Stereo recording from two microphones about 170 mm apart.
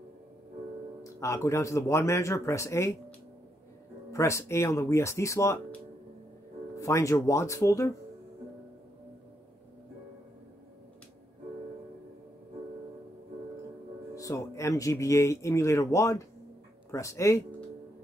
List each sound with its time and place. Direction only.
1.0 s speech: 15° left (ahead or behind)
4.1 s speech: 15° left (ahead or behind)
6.8 s speech: 20° left (ahead or behind)
14.1 s speech: 20° left (ahead or behind)